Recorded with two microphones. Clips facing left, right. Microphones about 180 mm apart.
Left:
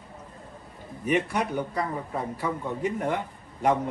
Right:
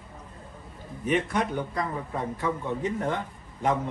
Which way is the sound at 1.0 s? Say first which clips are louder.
Even; 10° left (ahead or behind).